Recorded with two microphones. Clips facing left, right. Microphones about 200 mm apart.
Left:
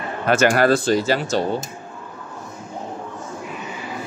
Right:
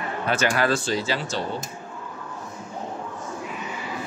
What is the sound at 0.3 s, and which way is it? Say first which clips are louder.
Speech: left 7 dB; 45° left (ahead or behind).